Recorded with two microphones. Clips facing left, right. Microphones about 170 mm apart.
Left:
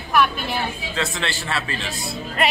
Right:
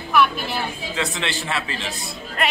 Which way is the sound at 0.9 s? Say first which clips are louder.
Right 1 dB; 15° right (ahead or behind).